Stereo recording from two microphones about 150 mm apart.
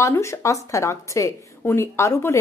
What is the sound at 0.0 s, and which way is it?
A woman's voice, 20° left (ahead or behind).